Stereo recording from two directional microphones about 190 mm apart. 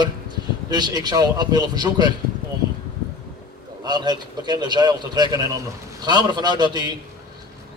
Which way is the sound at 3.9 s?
20° right (ahead or behind).